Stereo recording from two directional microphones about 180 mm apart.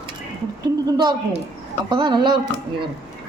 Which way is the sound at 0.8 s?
25° right (ahead or behind).